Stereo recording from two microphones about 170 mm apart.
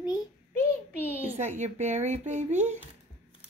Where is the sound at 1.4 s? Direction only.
40° right (ahead or behind).